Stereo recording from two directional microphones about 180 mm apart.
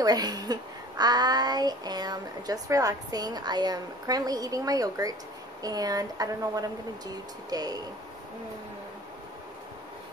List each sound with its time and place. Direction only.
0.0 s a woman's voice: 20° right (ahead or behind)